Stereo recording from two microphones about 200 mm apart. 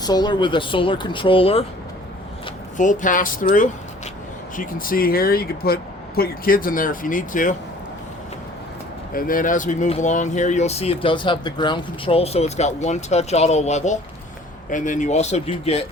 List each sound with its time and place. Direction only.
0.0 s speech: 20° left (ahead or behind)
2.7 s speech: 40° left (ahead or behind)
9.1 s speech: 45° left (ahead or behind)